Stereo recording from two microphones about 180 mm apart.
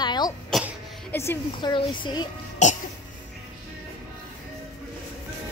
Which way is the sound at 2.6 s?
40° left (ahead or behind).